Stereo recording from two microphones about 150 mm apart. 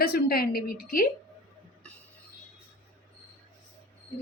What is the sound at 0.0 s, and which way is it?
A woman's voice, 90° left.